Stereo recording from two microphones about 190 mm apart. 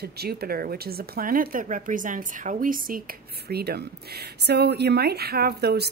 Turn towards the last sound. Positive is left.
turn(degrees=-60)  # may be behind; listen again after turning